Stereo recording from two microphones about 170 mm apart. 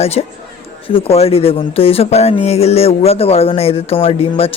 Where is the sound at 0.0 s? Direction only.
35° left (ahead or behind).